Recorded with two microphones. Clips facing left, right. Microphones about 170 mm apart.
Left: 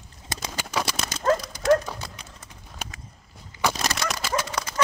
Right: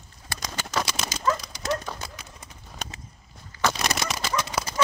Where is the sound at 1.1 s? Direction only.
55° left (ahead or behind).